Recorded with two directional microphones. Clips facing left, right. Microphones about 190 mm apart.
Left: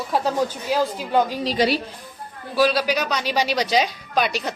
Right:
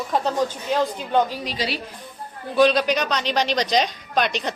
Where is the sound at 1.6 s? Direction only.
55° left (ahead or behind).